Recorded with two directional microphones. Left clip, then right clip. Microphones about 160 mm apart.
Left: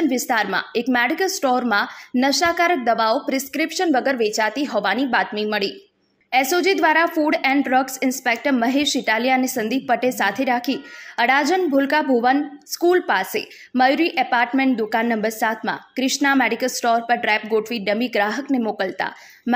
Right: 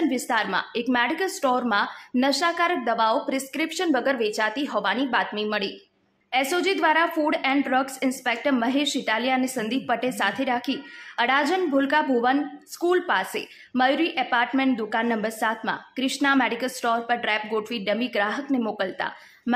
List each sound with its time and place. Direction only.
0.3 s a woman's voice: 20° left (ahead or behind)